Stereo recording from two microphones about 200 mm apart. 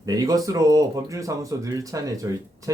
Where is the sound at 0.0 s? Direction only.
20° right (ahead or behind).